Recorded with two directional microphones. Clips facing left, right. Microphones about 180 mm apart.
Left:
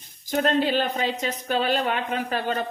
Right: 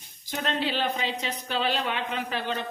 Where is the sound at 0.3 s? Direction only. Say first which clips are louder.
Left 7 dB; 45° left (ahead or behind).